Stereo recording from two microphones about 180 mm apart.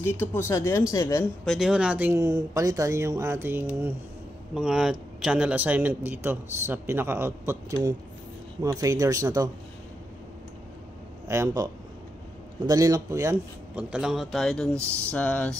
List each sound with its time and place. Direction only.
0.0 s speech: 15° left (ahead or behind)
1.4 s a man's voice: centre (ahead or behind); by 9.5 s 20° right (ahead or behind)
11.2 s a man's voice: 15° right (ahead or behind)
13.8 s speech: 5° right (ahead or behind)